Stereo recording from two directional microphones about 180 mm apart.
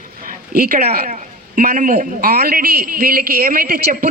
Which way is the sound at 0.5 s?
55° right (ahead or behind).